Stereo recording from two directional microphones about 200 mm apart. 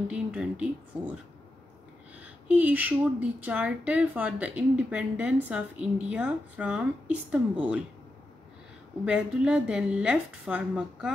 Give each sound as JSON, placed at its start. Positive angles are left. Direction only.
{"t": 0.1, "sound": "speech", "side_deg": -5}
{"t": 2.2, "sound": "speech", "side_deg": -10}
{"t": 9.0, "sound": "a woman's voice", "side_deg": -5}